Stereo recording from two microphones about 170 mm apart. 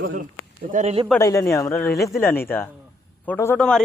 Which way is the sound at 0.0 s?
55° right (ahead or behind).